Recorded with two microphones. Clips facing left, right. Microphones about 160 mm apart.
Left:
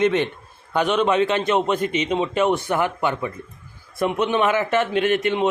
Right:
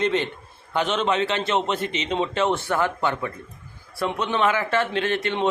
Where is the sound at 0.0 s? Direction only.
10° left (ahead or behind).